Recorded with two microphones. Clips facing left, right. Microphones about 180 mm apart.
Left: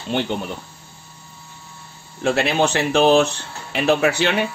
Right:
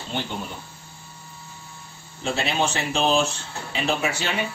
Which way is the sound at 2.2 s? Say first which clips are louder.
Left 6 dB; 65° left (ahead or behind).